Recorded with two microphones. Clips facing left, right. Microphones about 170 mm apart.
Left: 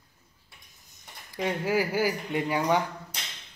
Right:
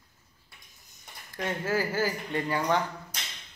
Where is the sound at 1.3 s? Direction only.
15° left (ahead or behind).